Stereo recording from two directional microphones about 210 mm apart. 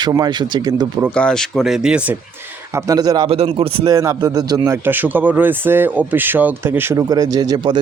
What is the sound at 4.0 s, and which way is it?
A man's voice, 15° right (ahead or behind).